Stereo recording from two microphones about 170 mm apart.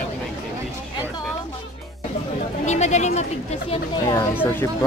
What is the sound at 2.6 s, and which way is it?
Speech, 40° left (ahead or behind).